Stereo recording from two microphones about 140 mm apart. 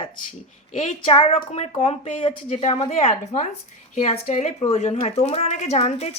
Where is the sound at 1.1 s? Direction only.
45° left (ahead or behind).